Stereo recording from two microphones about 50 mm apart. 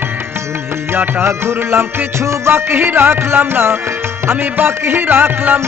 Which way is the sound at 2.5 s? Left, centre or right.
Right.